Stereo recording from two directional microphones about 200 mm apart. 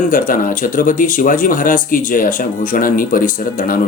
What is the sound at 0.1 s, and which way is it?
Speech, 45° left (ahead or behind).